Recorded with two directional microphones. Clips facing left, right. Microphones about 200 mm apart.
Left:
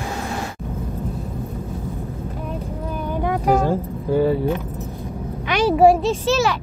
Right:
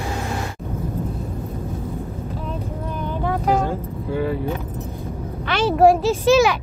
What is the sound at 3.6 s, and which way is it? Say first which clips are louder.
Vehicle: left 4 dB; 40° left (ahead or behind).